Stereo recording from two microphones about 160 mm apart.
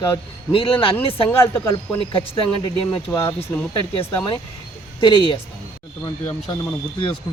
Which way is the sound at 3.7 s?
30° left (ahead or behind).